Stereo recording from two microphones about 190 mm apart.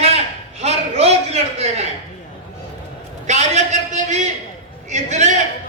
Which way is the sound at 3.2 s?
35° right (ahead or behind).